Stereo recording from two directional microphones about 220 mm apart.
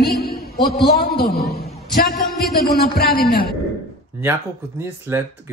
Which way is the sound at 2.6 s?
45° left (ahead or behind).